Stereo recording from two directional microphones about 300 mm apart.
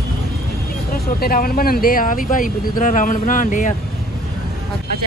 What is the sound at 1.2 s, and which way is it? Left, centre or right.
Speech, left.